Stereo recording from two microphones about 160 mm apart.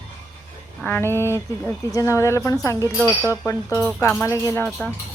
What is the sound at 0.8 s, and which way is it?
A woman's voice, 15° left (ahead or behind).